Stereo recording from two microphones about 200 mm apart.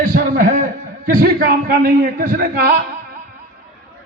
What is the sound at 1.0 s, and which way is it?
A man's voice, 45° right (ahead or behind).